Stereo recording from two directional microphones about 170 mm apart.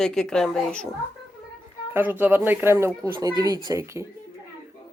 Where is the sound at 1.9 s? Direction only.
10° right (ahead or behind).